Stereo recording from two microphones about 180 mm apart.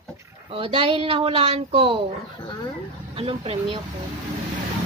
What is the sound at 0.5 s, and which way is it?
A woman's voice, 30° right (ahead or behind).